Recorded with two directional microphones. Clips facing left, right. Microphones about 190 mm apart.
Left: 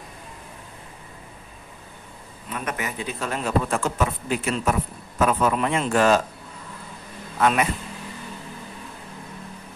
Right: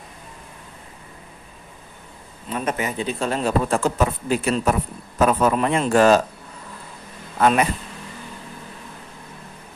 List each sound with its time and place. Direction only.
2.5 s a man's voice: 25° right (ahead or behind)
7.3 s speech: 35° right (ahead or behind)